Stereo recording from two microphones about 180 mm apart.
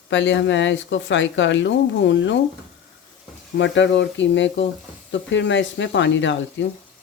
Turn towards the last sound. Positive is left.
turn(degrees=90)